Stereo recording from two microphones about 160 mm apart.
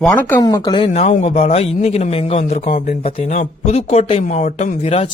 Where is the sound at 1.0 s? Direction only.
50° left (ahead or behind).